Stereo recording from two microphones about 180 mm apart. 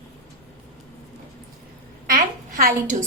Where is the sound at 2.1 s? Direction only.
50° right (ahead or behind).